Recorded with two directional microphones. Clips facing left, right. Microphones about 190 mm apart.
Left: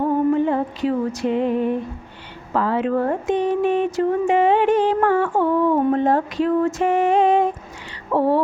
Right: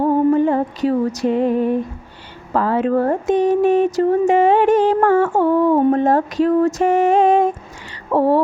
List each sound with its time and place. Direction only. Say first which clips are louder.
0.3 s music: right 3 dB; 40° right (ahead or behind)
2.5 s speech: right 3 dB; 45° right (ahead or behind)